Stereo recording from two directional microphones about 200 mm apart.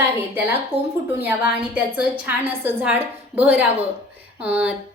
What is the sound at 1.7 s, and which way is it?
A woman's voice, 5° right (ahead or behind).